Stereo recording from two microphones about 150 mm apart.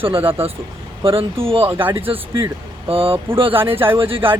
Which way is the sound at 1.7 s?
15° right (ahead or behind).